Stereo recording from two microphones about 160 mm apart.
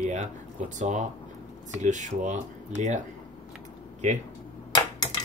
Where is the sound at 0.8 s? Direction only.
50° right (ahead or behind).